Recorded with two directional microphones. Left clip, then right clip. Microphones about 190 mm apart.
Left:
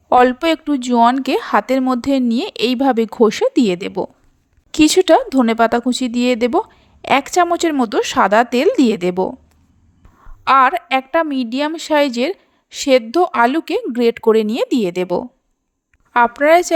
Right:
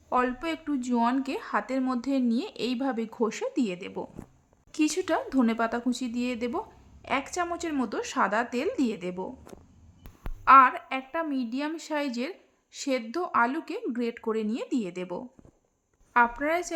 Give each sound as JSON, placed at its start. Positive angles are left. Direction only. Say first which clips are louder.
{"t": 0.1, "sound": "speech", "louder": "left 15 dB", "side_deg": 45}
{"t": 10.4, "sound": "a woman's voice", "louder": "left 5 dB", "side_deg": 45}